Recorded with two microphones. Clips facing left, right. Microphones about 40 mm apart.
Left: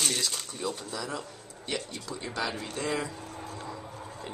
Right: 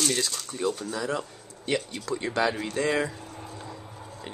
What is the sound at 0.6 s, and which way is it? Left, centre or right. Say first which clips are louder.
Speech: right 6 dB; right.